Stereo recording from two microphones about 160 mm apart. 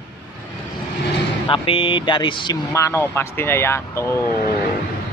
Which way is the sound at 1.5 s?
35° left (ahead or behind).